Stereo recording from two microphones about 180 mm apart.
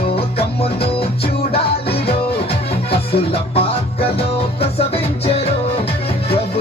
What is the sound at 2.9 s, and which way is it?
Music, 35° left (ahead or behind).